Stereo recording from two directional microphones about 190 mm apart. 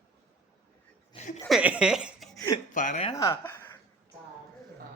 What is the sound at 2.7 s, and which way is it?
Speech, 45° left (ahead or behind).